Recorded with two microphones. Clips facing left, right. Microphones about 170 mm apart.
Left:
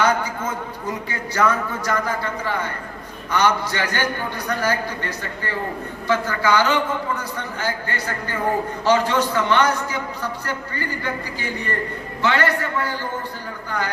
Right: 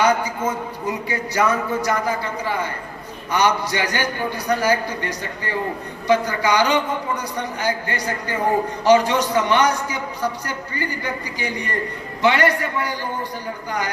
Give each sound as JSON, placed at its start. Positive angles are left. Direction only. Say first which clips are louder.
{"t": 0.0, "sound": "a man's voice", "louder": "right 2 dB", "side_deg": -10}